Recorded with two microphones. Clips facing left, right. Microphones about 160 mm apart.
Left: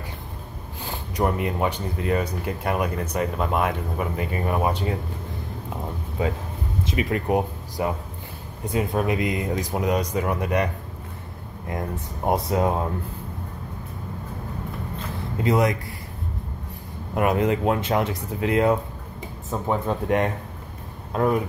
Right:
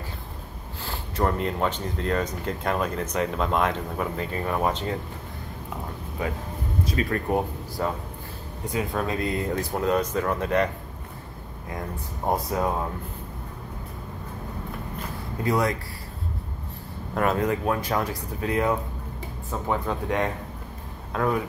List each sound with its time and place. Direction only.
0.8 s speech: 15° left (ahead or behind)
6.8 s speech: 20° left (ahead or behind)
12.3 s speech: 25° left (ahead or behind)
15.4 s speech: 20° left (ahead or behind)
17.1 s speech: 15° left (ahead or behind)